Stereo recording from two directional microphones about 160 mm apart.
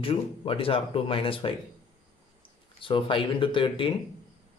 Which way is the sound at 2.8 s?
30° left (ahead or behind).